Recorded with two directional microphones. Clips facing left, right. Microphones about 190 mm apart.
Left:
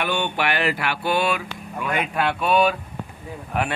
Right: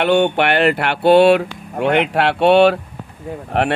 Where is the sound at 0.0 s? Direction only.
65° right (ahead or behind).